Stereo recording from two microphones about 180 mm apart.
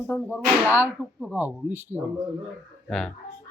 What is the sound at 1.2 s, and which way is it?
Speech, 10° right (ahead or behind).